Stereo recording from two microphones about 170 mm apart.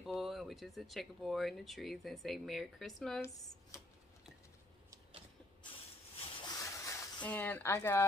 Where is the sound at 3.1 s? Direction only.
20° left (ahead or behind).